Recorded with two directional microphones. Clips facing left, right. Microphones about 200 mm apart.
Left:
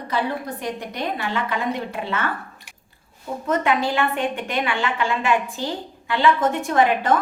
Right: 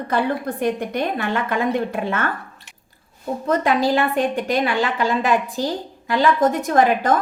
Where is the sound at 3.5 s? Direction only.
35° right (ahead or behind).